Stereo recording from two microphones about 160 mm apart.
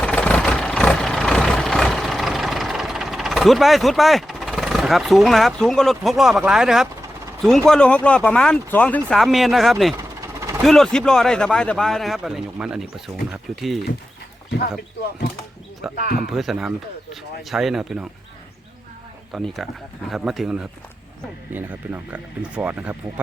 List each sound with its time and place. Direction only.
0.0 s vehicle: 5° left (ahead or behind)
7.7 s speech: 5° left (ahead or behind)
15.8 s speech: centre (ahead or behind)
19.3 s speech: centre (ahead or behind)